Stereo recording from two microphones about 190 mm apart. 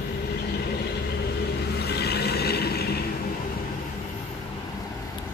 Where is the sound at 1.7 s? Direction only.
60° left (ahead or behind).